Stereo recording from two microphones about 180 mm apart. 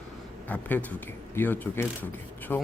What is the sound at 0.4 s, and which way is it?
Speech, 10° left (ahead or behind).